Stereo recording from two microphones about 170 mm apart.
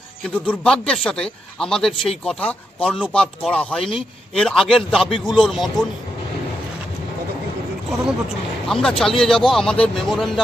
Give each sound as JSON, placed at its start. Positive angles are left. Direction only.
{"t": 0.3, "sound": "speech", "side_deg": 10}
{"t": 8.6, "sound": "speech", "side_deg": 5}